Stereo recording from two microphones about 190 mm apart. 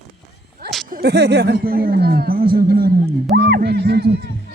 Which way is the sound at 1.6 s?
50° right (ahead or behind).